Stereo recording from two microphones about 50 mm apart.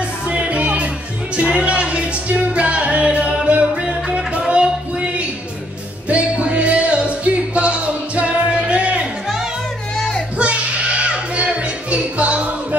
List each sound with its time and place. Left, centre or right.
0.3 s music: right
10.4 s music: right